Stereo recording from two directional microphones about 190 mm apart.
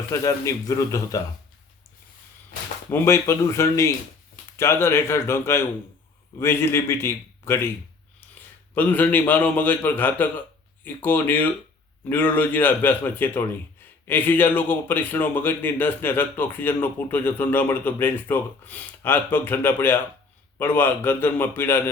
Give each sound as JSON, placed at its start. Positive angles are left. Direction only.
{"t": 0.1, "sound": "a man's voice", "side_deg": 15}
{"t": 2.9, "sound": "a man's voice", "side_deg": 15}
{"t": 8.7, "sound": "a man's voice", "side_deg": 10}